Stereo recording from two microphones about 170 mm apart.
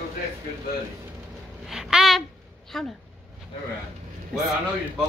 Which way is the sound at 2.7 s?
Centre (ahead or behind).